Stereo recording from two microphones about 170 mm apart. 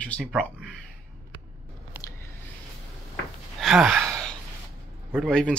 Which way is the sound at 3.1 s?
Centre (ahead or behind).